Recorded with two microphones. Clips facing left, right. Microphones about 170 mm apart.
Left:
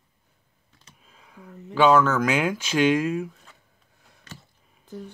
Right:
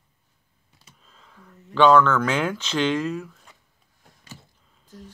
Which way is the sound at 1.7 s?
10° left (ahead or behind).